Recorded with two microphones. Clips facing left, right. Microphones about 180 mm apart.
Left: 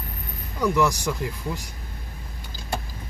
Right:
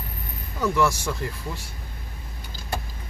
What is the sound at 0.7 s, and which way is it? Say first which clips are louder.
Speech: left 1 dB; 15° left (ahead or behind).